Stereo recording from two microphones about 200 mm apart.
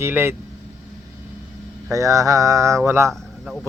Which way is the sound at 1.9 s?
15° right (ahead or behind).